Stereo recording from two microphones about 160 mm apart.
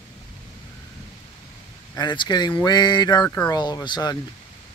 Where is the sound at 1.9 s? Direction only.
30° left (ahead or behind).